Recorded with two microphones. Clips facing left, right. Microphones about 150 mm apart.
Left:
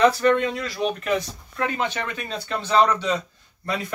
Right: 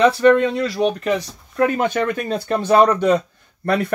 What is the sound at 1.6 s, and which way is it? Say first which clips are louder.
Speech: right 8 dB; 50° right (ahead or behind).